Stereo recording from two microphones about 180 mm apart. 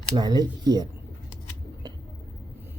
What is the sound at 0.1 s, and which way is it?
Speech, 20° right (ahead or behind).